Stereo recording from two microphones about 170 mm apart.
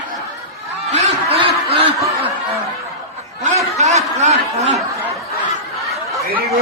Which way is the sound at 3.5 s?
40° right (ahead or behind).